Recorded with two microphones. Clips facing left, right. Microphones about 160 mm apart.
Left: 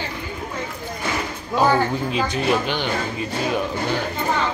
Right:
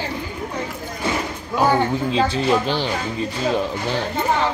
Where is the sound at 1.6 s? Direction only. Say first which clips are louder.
Right 1 dB; 20° right (ahead or behind).